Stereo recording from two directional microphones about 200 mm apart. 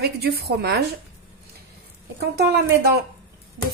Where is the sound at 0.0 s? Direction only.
55° right (ahead or behind).